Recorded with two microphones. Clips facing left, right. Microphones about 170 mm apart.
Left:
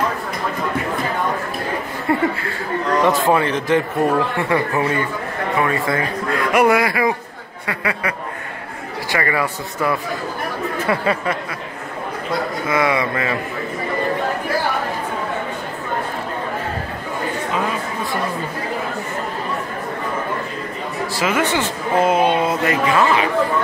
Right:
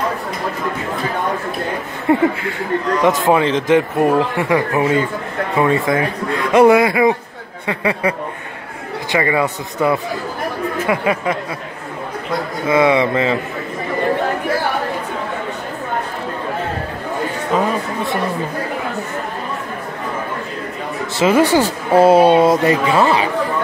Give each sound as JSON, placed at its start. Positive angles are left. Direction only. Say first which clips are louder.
{"t": 2.1, "sound": "chuckle", "louder": "right 5 dB", "side_deg": -20}
{"t": 3.0, "sound": "a man's voice", "louder": "right 2 dB", "side_deg": -15}
{"t": 9.1, "sound": "a man's voice", "louder": "right 4 dB", "side_deg": -20}
{"t": 12.6, "sound": "a man's voice", "louder": "right 7 dB", "side_deg": -25}
{"t": 21.2, "sound": "speech", "louder": "right 7 dB", "side_deg": -35}